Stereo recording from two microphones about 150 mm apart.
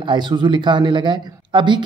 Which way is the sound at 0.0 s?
30° right (ahead or behind).